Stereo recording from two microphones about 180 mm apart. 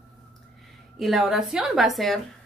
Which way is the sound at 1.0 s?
Centre (ahead or behind).